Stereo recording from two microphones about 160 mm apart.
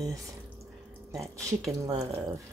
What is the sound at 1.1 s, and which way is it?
Speech, 20° right (ahead or behind).